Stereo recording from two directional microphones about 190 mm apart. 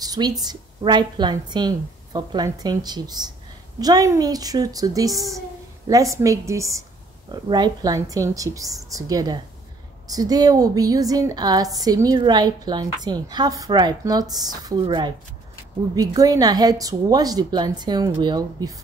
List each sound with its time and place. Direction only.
0.0 s a woman's voice: 20° right (ahead or behind)